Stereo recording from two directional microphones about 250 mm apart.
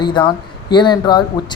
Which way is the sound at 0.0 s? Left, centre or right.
Centre.